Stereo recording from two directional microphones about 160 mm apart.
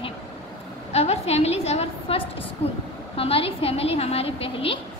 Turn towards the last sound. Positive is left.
turn(degrees=35)  # may be behind; listen again after turning